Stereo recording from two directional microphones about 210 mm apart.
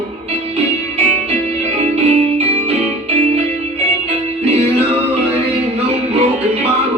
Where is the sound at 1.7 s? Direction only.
30° right (ahead or behind).